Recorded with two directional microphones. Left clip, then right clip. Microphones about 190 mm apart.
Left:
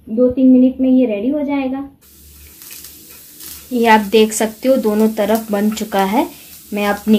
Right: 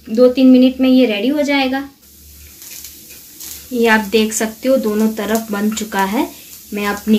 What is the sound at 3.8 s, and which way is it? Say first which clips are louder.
Speech: left 2 dB; 50° left (ahead or behind).